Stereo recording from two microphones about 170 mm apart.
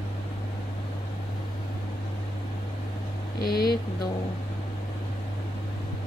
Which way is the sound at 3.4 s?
65° left (ahead or behind).